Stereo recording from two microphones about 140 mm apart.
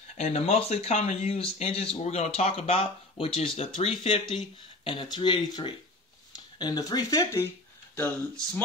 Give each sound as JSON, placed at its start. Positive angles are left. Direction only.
{"t": 0.2, "sound": "speech", "side_deg": 50}